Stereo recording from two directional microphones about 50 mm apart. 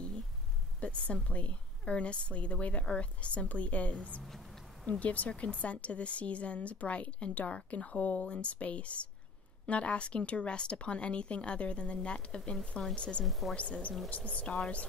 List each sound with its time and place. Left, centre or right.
0.7 s a woman's voice: left
13.2 s speech: centre
13.6 s a woman's voice: left